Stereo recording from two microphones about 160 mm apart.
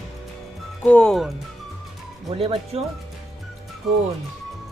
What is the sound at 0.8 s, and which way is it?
Speech, 10° left (ahead or behind).